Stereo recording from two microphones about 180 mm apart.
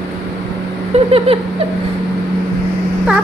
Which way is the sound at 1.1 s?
35° right (ahead or behind).